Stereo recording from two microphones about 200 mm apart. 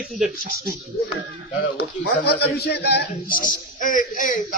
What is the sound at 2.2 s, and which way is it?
A man's voice, 55° left (ahead or behind).